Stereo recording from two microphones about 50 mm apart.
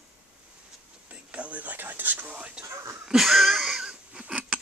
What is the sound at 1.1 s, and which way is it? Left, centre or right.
Whispering, right.